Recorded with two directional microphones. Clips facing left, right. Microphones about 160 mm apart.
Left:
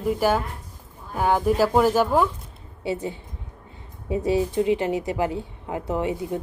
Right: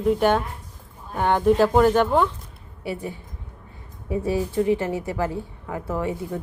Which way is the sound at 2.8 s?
20° left (ahead or behind).